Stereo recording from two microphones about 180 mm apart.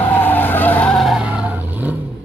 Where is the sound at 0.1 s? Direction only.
10° left (ahead or behind).